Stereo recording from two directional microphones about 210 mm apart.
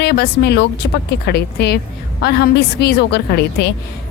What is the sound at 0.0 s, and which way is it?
Speech, 50° left (ahead or behind).